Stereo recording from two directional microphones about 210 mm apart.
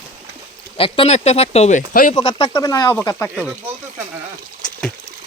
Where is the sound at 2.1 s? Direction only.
20° left (ahead or behind).